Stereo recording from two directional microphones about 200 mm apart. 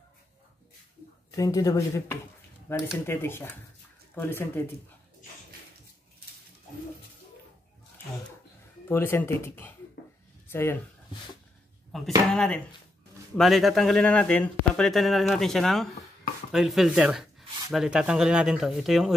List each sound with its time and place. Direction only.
1.3 s speech: 15° left (ahead or behind)
8.8 s speech: 10° left (ahead or behind)
11.9 s speech: centre (ahead or behind)